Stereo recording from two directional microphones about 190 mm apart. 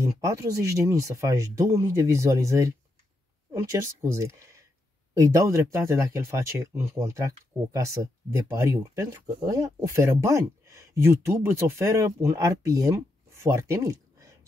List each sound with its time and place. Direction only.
0.0 s speech: 15° right (ahead or behind)